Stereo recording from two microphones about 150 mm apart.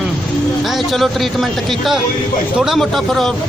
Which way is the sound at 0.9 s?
Centre (ahead or behind).